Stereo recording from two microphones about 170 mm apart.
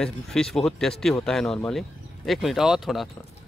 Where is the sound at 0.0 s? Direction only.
5° left (ahead or behind).